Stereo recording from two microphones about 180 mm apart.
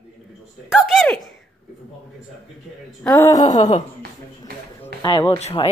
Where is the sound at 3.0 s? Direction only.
10° left (ahead or behind).